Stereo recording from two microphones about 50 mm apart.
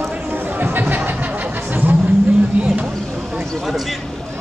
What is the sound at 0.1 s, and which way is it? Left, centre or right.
Chatter, right.